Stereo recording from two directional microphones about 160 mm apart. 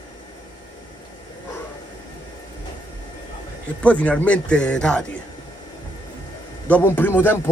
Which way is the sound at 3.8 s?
10° left (ahead or behind).